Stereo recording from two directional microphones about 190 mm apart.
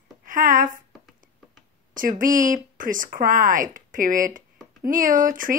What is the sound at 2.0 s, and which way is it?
Speech, 45° right (ahead or behind).